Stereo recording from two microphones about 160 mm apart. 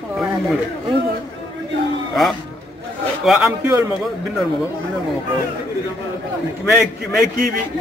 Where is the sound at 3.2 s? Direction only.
Centre (ahead or behind).